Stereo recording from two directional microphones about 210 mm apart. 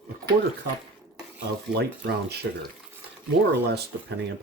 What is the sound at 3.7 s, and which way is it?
Speech, 50° right (ahead or behind).